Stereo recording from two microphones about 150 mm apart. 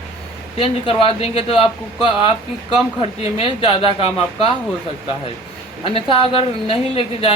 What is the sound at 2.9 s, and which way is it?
Speech, 40° left (ahead or behind).